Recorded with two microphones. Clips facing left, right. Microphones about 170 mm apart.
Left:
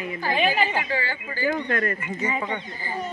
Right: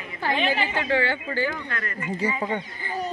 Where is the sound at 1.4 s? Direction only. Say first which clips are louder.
Left 5 dB; 40° left (ahead or behind).